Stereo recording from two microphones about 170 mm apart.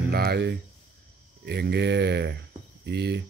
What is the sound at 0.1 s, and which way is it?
Speech, 65° right (ahead or behind).